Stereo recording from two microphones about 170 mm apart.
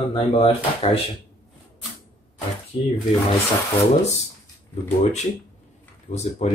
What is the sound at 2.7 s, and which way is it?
Speech, 35° left (ahead or behind).